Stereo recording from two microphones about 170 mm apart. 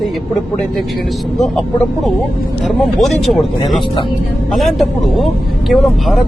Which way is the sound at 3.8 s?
30° left (ahead or behind).